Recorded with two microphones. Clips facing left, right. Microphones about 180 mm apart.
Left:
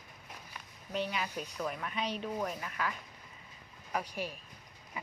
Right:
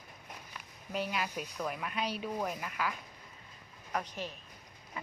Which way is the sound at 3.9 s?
10° left (ahead or behind).